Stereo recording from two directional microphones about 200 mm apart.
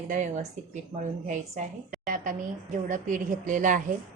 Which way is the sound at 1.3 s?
40° right (ahead or behind).